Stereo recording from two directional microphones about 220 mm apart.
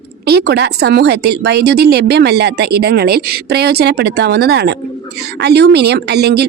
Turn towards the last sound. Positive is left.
turn(degrees=-50)  # may be behind; listen again after turning